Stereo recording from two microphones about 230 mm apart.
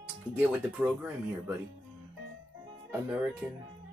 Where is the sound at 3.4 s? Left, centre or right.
Centre.